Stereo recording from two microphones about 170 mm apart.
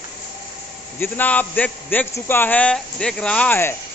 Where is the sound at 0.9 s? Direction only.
10° left (ahead or behind).